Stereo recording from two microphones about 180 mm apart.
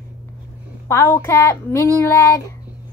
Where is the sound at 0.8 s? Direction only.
15° left (ahead or behind).